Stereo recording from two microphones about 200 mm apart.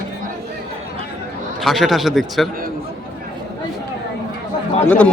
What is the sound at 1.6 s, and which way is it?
Speech, centre (ahead or behind).